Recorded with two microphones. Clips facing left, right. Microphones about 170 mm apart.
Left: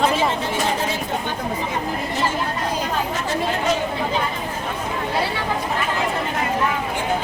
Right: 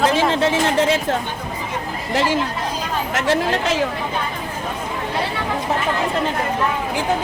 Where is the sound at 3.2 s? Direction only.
90° right.